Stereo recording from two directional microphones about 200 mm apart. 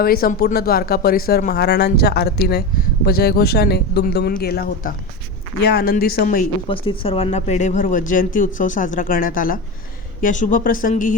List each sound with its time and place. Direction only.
0.0 s speech: 45° left (ahead or behind)
6.7 s speech: 25° left (ahead or behind); by 11.1 s 40° left (ahead or behind)